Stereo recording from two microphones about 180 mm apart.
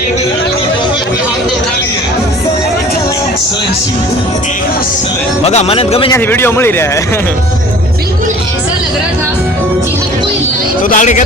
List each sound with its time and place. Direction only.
5.4 s a man's voice: 35° left (ahead or behind)
6.1 s a man's voice: 10° left (ahead or behind)
10.8 s speech: 45° left (ahead or behind)